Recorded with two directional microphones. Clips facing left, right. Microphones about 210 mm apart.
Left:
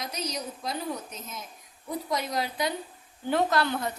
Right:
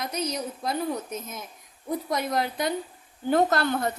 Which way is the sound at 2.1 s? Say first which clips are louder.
Right 2 dB; 55° right (ahead or behind).